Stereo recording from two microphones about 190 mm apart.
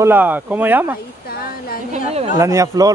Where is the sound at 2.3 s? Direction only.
15° right (ahead or behind).